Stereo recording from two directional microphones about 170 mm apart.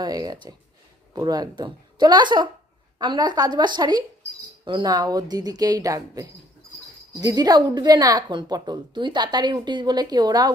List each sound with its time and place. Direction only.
0.0 s a woman's voice: 25° right (ahead or behind)